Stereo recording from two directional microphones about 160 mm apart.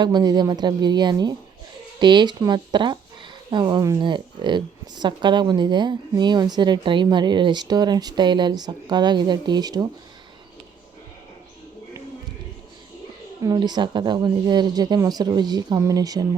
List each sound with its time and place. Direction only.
0.0 s speech: 25° right (ahead or behind)
13.4 s speech: 25° right (ahead or behind)